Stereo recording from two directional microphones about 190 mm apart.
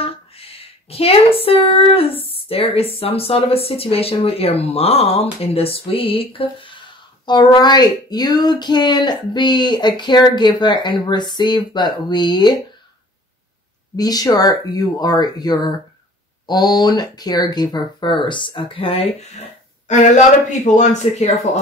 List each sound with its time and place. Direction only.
0.0 s a sound: 30° left (ahead or behind)
2.3 s speech: 30° left (ahead or behind)
13.9 s speech: 20° left (ahead or behind)
20.6 s speech: 40° left (ahead or behind)